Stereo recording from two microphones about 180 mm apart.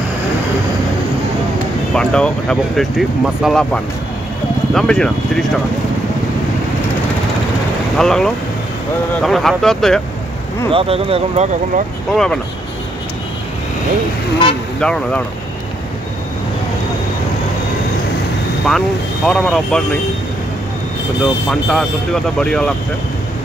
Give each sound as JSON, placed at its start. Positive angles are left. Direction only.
{"t": 2.0, "sound": "speech", "side_deg": 5}
{"t": 8.0, "sound": "speech", "side_deg": 5}
{"t": 10.7, "sound": "speech", "side_deg": -30}
{"t": 12.1, "sound": "speech", "side_deg": 5}
{"t": 14.8, "sound": "speech", "side_deg": 5}
{"t": 18.7, "sound": "speech", "side_deg": 0}
{"t": 21.5, "sound": "speech", "side_deg": 5}